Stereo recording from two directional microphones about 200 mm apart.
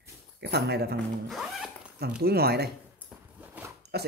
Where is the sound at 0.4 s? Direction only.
55° right (ahead or behind).